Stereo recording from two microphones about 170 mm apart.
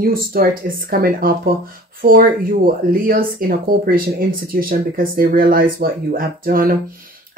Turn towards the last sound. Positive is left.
turn(degrees=-60)  # may be behind; listen again after turning